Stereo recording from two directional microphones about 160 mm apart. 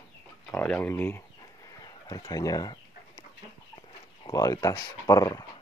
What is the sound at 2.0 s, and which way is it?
Chicken, 20° left (ahead or behind).